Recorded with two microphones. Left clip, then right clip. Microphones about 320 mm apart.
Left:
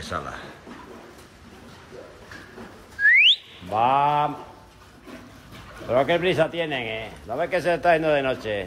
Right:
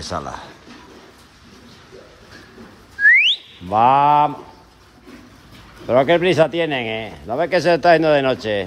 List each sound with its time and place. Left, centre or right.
3.0 s whistling: right
3.7 s speech: right
5.9 s speech: right